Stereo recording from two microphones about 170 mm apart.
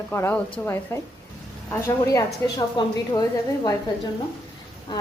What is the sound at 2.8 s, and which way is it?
Speech, 25° left (ahead or behind).